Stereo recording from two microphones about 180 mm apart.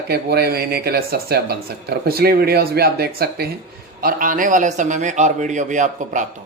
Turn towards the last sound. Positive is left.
turn(degrees=-45)  # may be behind; listen again after turning